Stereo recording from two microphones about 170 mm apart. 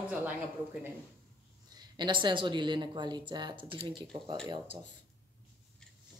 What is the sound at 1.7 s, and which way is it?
Speech, 25° right (ahead or behind).